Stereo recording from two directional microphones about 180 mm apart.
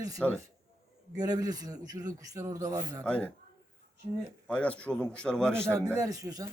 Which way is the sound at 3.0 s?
5° left (ahead or behind).